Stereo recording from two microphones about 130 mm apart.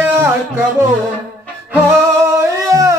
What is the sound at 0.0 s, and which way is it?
Music, 15° right (ahead or behind).